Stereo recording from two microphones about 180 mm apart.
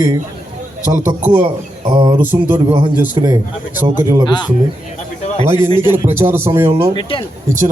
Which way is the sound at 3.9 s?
20° right (ahead or behind).